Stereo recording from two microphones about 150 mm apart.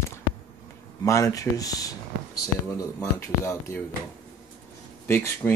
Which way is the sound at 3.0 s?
20° left (ahead or behind).